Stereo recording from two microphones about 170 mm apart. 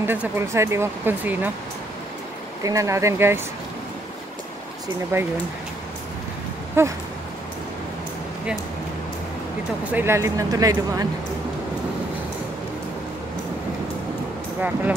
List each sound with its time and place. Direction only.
0.0 s speech: 10° right (ahead or behind)
2.6 s speech: 20° right (ahead or behind)
5.1 s speech: 15° right (ahead or behind)
6.8 s speech: 15° right (ahead or behind)
9.9 s speech: 15° right (ahead or behind)